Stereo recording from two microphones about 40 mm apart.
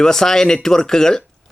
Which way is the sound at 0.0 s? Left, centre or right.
Centre.